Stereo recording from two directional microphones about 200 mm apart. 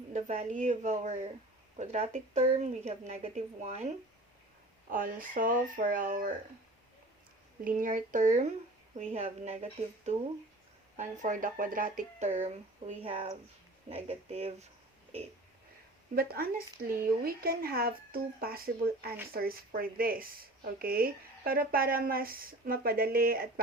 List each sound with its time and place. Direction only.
0.1 s speech: 35° right (ahead or behind)
7.6 s speech: 45° right (ahead or behind)
10.9 s speech: 40° right (ahead or behind)
16.1 s speech: 50° right (ahead or behind)